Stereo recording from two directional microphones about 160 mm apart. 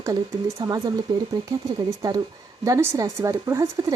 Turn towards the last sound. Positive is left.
turn(degrees=-20)  # may be behind; listen again after turning